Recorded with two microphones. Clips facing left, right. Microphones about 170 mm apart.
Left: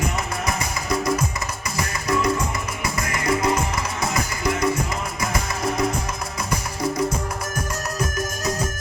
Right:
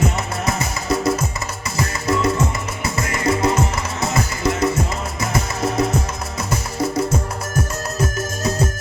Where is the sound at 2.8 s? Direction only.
25° right (ahead or behind).